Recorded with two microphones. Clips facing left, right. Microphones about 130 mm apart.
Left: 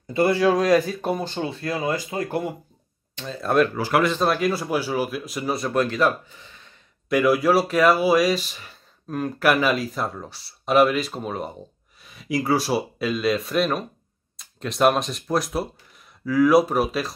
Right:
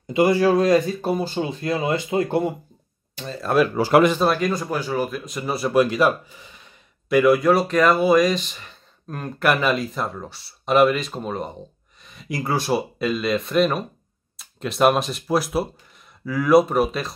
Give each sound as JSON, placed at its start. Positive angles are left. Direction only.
{"t": 0.0, "sound": "speech", "side_deg": -15}
{"t": 3.2, "sound": "speech", "side_deg": 0}
{"t": 3.7, "sound": "speech", "side_deg": -25}
{"t": 4.1, "sound": "speech", "side_deg": 0}
{"t": 7.1, "sound": "speech", "side_deg": 0}